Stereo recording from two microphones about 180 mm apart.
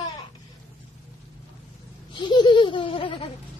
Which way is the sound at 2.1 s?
25° left (ahead or behind).